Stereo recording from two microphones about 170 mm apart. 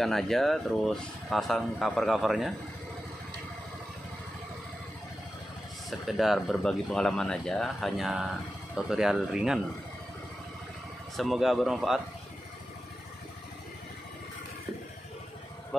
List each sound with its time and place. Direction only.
0.0 s speech: centre (ahead or behind)
5.9 s speech: centre (ahead or behind)
11.1 s speech: centre (ahead or behind)